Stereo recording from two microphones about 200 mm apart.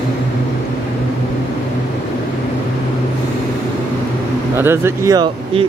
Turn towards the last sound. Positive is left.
turn(degrees=-25)  # may be behind; listen again after turning